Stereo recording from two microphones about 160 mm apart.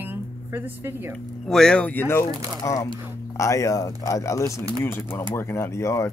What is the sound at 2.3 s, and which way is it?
Speech, 20° right (ahead or behind).